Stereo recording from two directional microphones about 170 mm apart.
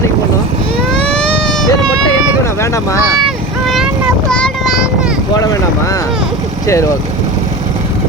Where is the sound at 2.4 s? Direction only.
15° left (ahead or behind).